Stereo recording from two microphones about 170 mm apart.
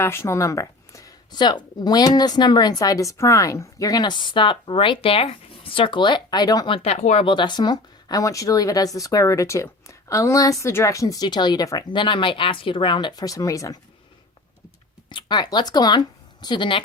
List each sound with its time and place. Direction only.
0.0 s speech: 15° left (ahead or behind)
6.7 s speech: 35° left (ahead or behind); by 13.7 s 20° left (ahead or behind)
15.1 s speech: 25° left (ahead or behind)